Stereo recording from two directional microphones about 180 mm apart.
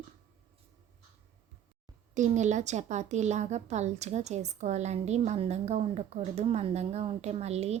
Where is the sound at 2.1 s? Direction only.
40° right (ahead or behind).